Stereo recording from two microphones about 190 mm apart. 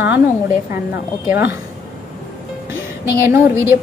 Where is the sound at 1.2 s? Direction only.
10° right (ahead or behind).